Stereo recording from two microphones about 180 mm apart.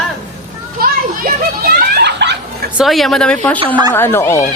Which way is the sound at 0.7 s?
50° right (ahead or behind).